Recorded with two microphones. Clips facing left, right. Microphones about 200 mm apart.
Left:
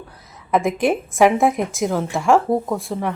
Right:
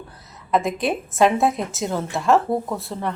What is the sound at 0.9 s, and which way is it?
A woman's voice, 15° left (ahead or behind).